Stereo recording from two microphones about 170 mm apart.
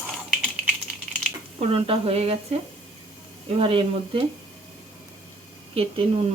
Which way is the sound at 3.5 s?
30° right (ahead or behind).